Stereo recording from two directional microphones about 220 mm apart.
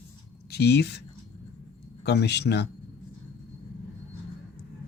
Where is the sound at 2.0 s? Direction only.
50° left (ahead or behind).